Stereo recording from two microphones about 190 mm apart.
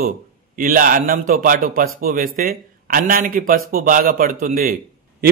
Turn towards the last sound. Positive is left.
turn(degrees=-45)  # may be behind; listen again after turning